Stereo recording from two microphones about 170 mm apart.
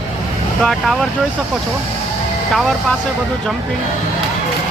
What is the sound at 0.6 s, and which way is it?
Speech, centre (ahead or behind).